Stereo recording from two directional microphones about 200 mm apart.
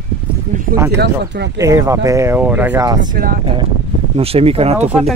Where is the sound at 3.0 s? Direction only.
45° right (ahead or behind).